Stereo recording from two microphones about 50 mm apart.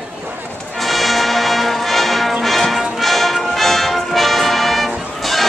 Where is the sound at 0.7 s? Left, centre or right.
Centre.